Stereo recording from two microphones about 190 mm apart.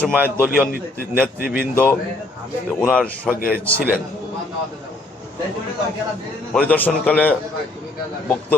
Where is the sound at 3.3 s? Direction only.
50° left (ahead or behind).